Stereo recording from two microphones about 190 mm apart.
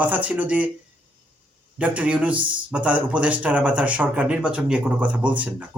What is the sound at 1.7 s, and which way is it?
Speech, 5° right (ahead or behind).